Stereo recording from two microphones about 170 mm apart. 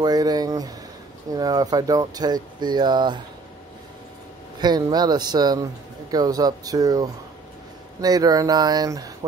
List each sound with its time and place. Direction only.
0.0 s a sound: 20° right (ahead or behind)
1.3 s speech: 20° right (ahead or behind)
4.6 s speech: 25° right (ahead or behind)